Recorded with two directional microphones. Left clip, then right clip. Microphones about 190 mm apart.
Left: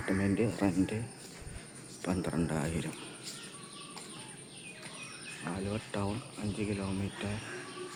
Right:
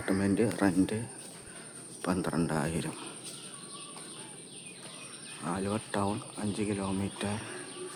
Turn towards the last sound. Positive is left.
turn(degrees=-25)  # may be behind; listen again after turning